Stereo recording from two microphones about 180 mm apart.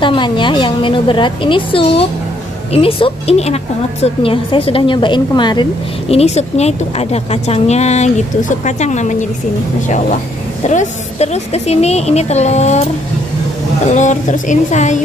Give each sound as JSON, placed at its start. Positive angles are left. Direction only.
{"t": 0.0, "sound": "a woman's voice", "side_deg": 25}
{"t": 13.9, "sound": "a woman's voice", "side_deg": 45}